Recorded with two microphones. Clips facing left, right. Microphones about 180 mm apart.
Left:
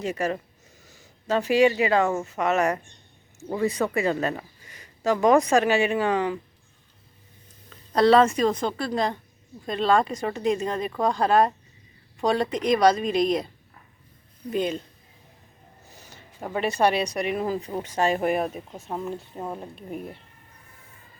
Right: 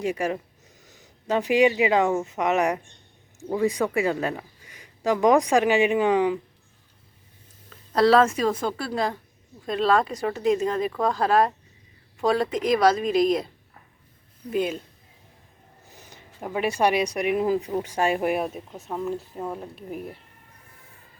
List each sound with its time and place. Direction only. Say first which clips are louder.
0.0 s speech: right 1 dB; 10° right (ahead or behind)
7.7 s speech: even; centre (ahead or behind)
14.5 s speech: right 1 dB; 5° right (ahead or behind)
15.9 s a sound: right 1 dB; 15° right (ahead or behind)
16.4 s speech: even; 10° right (ahead or behind)